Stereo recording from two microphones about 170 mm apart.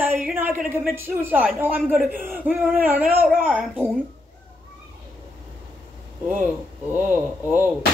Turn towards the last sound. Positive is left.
turn(degrees=-10)  # may be behind; listen again after turning